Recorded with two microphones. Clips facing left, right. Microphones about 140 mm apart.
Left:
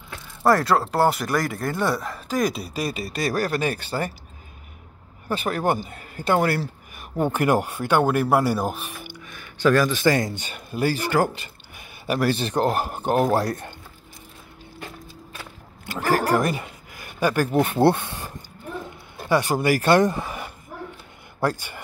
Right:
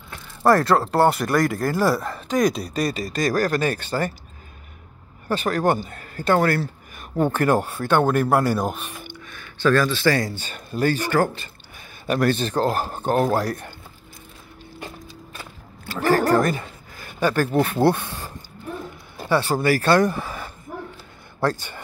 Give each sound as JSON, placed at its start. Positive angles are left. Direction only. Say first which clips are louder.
{"t": 0.1, "sound": "speech", "louder": "right 2 dB", "side_deg": 0}
{"t": 5.3, "sound": "speech", "louder": "right 2 dB", "side_deg": 5}
{"t": 13.3, "sound": "speech", "louder": "left 1 dB", "side_deg": 25}
{"t": 15.8, "sound": "a man's voice", "louder": "right 3 dB", "side_deg": 15}